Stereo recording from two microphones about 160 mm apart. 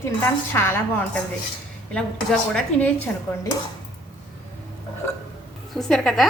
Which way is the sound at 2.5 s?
10° left (ahead or behind).